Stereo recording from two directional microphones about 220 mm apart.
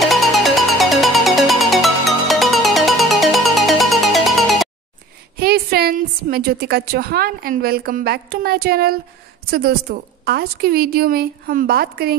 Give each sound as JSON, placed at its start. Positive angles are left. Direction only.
{"t": 0.0, "sound": "music", "side_deg": 0}
{"t": 5.4, "sound": "a woman's voice", "side_deg": -45}